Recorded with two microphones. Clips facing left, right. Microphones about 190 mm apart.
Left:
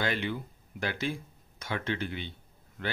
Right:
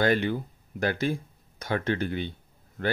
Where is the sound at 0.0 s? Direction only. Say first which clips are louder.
Right 7 dB; 45° right (ahead or behind).